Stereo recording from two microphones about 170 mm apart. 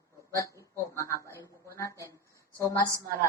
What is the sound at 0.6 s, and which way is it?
Speech, 15° left (ahead or behind).